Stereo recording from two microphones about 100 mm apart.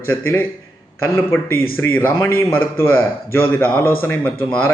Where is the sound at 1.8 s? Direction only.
20° left (ahead or behind).